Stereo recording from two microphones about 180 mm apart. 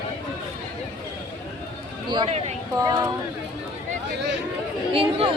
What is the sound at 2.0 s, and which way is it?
Speech, 25° right (ahead or behind).